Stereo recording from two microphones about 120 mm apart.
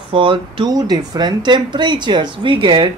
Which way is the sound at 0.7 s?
35° right (ahead or behind).